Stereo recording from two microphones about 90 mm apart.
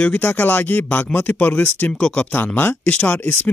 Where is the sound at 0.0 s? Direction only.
15° left (ahead or behind).